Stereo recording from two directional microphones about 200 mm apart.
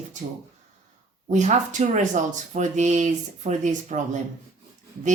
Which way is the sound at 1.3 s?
35° right (ahead or behind).